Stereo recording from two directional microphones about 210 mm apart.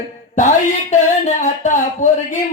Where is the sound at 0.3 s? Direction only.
35° left (ahead or behind).